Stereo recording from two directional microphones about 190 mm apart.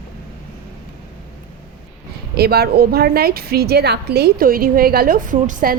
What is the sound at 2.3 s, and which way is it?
A woman's voice, 55° right (ahead or behind).